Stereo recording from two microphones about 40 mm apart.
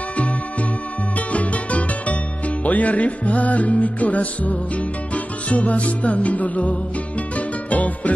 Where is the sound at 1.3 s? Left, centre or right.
Left.